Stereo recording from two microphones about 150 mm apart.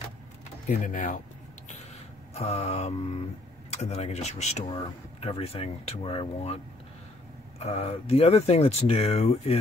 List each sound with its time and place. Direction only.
0.7 s speech: 60° left (ahead or behind)
2.3 s speech: 45° left (ahead or behind)
4.6 s speech: 35° left (ahead or behind)